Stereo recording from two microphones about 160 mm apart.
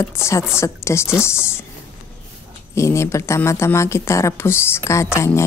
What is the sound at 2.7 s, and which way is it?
A woman's voice, 15° left (ahead or behind).